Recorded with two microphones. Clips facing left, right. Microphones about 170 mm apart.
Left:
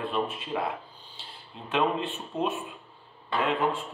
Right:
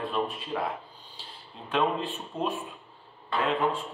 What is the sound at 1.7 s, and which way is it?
Speech, centre (ahead or behind).